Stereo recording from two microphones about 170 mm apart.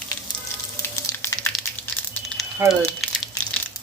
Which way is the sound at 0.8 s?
15° left (ahead or behind).